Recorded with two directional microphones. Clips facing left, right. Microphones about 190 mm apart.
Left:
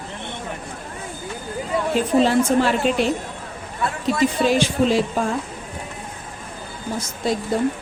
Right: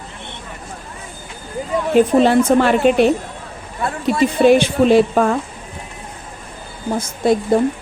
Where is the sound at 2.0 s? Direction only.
60° right (ahead or behind).